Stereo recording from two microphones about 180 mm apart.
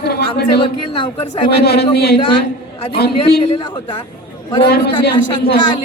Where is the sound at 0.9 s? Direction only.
25° left (ahead or behind).